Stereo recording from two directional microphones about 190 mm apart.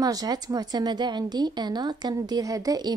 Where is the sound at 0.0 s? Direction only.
20° right (ahead or behind).